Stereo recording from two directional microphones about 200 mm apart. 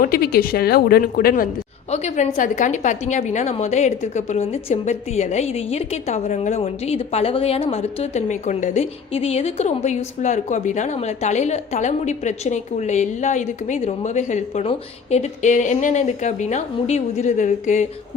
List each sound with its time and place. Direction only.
0.0 s speech: 50° left (ahead or behind)
1.9 s a woman's voice: 35° left (ahead or behind)